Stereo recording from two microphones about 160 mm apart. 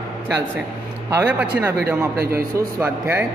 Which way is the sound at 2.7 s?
15° right (ahead or behind).